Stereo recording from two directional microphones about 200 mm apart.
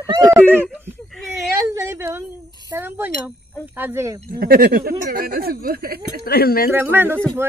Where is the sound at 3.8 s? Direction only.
10° right (ahead or behind).